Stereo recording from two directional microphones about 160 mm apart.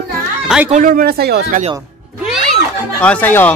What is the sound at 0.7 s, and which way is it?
Speech, 55° right (ahead or behind).